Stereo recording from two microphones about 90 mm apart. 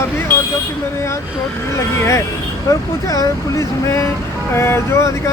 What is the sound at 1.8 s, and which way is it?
Speech, 30° left (ahead or behind).